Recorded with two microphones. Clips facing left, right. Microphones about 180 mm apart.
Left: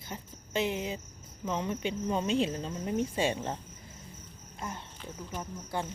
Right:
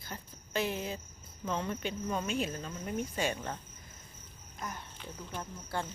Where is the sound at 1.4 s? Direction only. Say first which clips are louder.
Left 3 dB; 15° left (ahead or behind).